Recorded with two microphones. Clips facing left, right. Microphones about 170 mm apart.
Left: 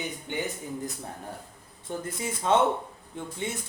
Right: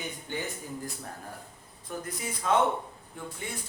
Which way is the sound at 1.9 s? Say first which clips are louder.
Left 3 dB; 25° left (ahead or behind).